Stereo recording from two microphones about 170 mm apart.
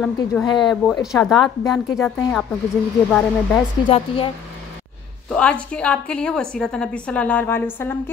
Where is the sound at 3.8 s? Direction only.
30° left (ahead or behind).